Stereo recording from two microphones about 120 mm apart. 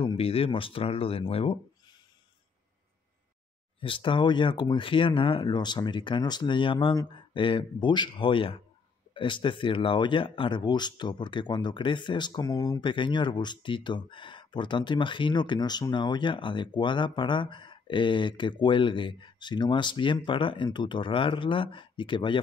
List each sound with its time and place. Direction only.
0.0 s speech: 55° left (ahead or behind)
3.8 s speech: 45° left (ahead or behind)